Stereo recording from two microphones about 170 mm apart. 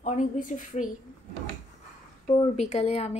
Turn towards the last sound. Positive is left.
turn(degrees=40)  # may be behind; listen again after turning